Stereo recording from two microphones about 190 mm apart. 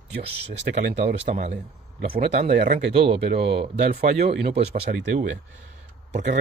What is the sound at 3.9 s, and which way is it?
Speech, 60° right (ahead or behind).